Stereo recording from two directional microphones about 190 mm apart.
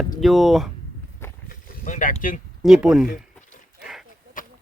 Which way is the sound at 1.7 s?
45° left (ahead or behind).